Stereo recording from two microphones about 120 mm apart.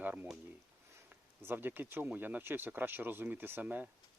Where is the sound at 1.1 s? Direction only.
15° right (ahead or behind).